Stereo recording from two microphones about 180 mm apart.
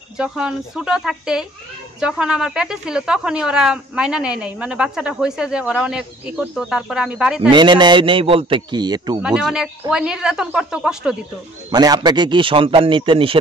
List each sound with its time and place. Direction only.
0.2 s speech: 5° right (ahead or behind)
7.5 s a man's voice: 25° right (ahead or behind)
9.2 s speech: 5° right (ahead or behind)
11.7 s a man's voice: 20° right (ahead or behind)